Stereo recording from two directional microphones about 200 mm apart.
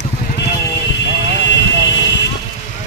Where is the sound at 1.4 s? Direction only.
60° left (ahead or behind).